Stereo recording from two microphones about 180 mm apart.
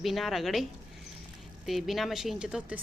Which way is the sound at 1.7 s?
Centre (ahead or behind).